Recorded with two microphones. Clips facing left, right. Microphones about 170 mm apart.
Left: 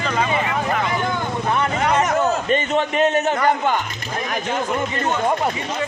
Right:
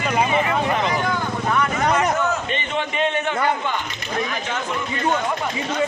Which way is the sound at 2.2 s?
40° left (ahead or behind).